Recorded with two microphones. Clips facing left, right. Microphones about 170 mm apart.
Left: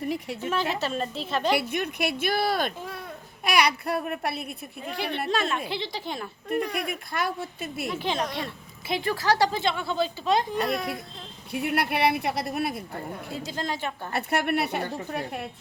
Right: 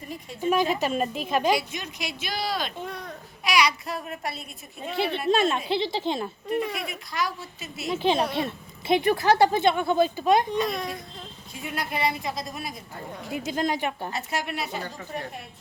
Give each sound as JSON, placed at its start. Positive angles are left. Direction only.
{"t": 0.5, "sound": "a woman's voice", "side_deg": -15}
{"t": 1.5, "sound": "speech", "side_deg": 60}
{"t": 2.7, "sound": "speech", "side_deg": 5}
{"t": 3.4, "sound": "speech", "side_deg": 55}
{"t": 5.0, "sound": "speech", "side_deg": -25}
{"t": 6.5, "sound": "speech", "side_deg": 0}
{"t": 7.1, "sound": "speech", "side_deg": 55}
{"t": 8.0, "sound": "speech", "side_deg": -20}
{"t": 10.7, "sound": "speech", "side_deg": 0}
{"t": 11.5, "sound": "speech", "side_deg": 65}
{"t": 13.3, "sound": "a woman's voice", "side_deg": -15}
{"t": 14.1, "sound": "speech", "side_deg": 60}